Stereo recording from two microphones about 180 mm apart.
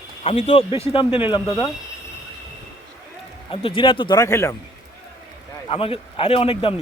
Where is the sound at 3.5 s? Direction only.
30° left (ahead or behind).